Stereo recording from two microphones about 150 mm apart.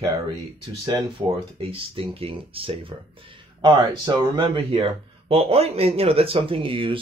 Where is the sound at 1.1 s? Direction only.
35° right (ahead or behind).